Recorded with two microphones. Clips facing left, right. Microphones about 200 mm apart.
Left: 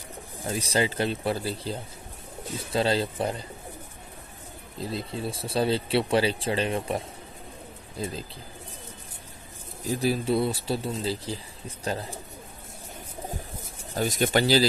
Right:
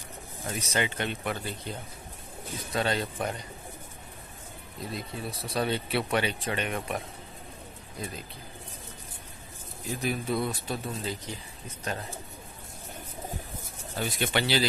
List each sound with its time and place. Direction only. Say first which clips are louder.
0.4 s speech: left 4 dB; 30° left (ahead or behind)
4.7 s speech: left 5 dB; 30° left (ahead or behind)
8.0 s speech: left 5 dB; 30° left (ahead or behind)
9.8 s speech: left 5 dB; 35° left (ahead or behind)
13.9 s speech: left 5 dB; 40° left (ahead or behind)